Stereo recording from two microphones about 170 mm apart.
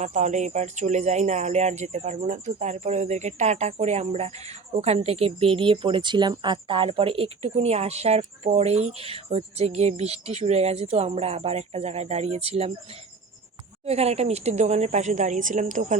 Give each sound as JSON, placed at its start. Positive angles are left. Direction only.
{"t": 0.0, "sound": "a woman's voice", "side_deg": -45}